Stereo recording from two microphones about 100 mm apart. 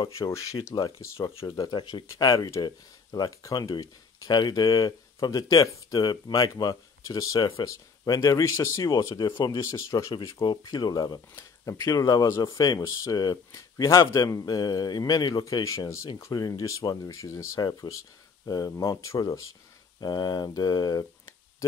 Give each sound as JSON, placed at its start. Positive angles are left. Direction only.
{"t": 0.1, "sound": "speech", "side_deg": 30}
{"t": 1.6, "sound": "speech", "side_deg": 50}
{"t": 2.2, "sound": "speech", "side_deg": 35}
{"t": 10.4, "sound": "speech", "side_deg": 45}
{"t": 20.0, "sound": "speech", "side_deg": 45}